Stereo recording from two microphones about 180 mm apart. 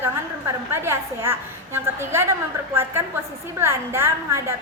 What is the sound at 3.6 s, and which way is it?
Speech, 15° right (ahead or behind).